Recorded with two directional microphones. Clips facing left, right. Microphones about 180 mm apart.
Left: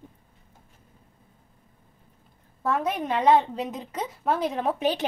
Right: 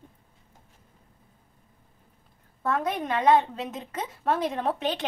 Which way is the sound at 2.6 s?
10° left (ahead or behind).